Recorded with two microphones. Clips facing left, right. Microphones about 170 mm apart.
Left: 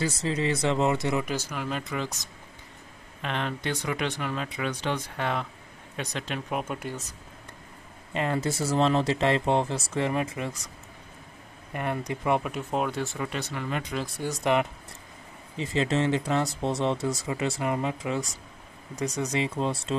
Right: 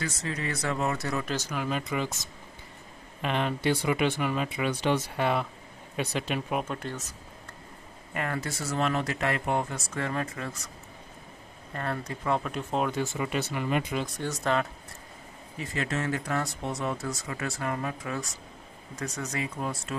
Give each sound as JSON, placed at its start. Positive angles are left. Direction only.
{"t": 0.0, "sound": "speech", "side_deg": 30}
{"t": 1.6, "sound": "speech", "side_deg": 0}
{"t": 6.6, "sound": "speech", "side_deg": 10}
{"t": 8.1, "sound": "speech", "side_deg": 25}
{"t": 11.7, "sound": "speech", "side_deg": 15}
{"t": 12.5, "sound": "speech", "side_deg": 0}
{"t": 13.9, "sound": "speech", "side_deg": 5}